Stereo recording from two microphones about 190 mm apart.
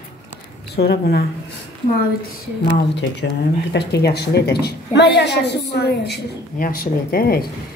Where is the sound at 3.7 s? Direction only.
60° left (ahead or behind).